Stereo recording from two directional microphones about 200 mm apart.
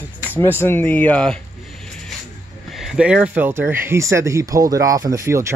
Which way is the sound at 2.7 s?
5° right (ahead or behind).